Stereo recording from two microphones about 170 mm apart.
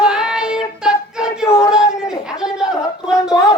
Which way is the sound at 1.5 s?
15° left (ahead or behind).